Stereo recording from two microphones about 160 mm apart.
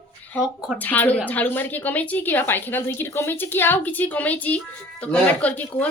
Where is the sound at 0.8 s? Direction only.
10° left (ahead or behind).